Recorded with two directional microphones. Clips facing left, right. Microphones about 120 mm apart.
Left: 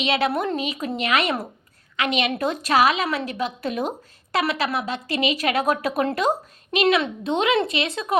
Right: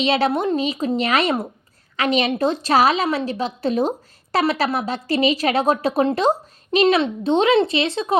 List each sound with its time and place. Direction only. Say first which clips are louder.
0.0 s a woman's voice: right 3 dB; 30° right (ahead or behind)